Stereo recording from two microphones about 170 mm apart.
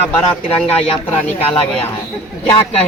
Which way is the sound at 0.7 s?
35° left (ahead or behind).